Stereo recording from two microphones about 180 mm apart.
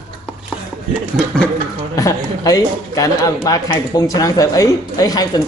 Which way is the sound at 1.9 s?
20° left (ahead or behind).